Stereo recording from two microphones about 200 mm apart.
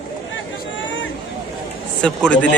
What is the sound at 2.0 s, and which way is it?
Speech, 5° left (ahead or behind).